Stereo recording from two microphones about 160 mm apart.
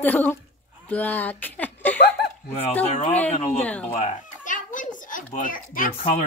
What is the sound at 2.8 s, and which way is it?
Speech, 40° left (ahead or behind).